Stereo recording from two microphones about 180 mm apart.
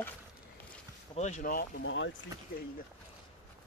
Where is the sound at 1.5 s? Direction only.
55° left (ahead or behind).